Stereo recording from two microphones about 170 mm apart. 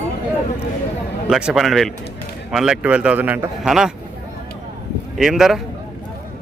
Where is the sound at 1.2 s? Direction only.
5° right (ahead or behind).